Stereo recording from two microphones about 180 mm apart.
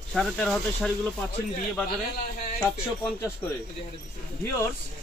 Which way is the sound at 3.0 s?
10° left (ahead or behind).